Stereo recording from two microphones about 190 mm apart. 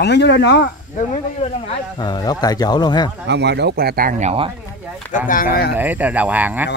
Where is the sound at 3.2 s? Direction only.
65° right (ahead or behind); by 4.5 s 30° right (ahead or behind).